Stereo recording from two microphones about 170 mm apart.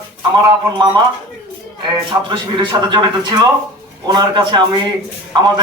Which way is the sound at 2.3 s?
25° right (ahead or behind).